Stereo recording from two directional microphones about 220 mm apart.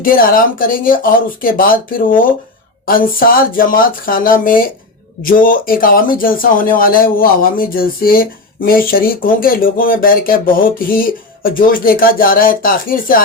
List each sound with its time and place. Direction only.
0.0 s speech: 40° left (ahead or behind)